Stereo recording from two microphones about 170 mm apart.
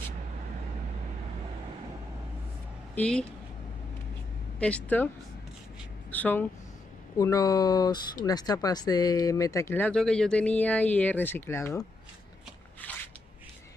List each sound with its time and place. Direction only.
3.0 s speech: 5° left (ahead or behind)
4.6 s speech: 5° left (ahead or behind)
6.1 s speech: 10° left (ahead or behind)